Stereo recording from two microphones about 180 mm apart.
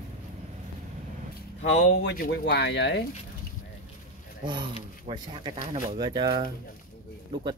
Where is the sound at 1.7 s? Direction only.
75° left (ahead or behind).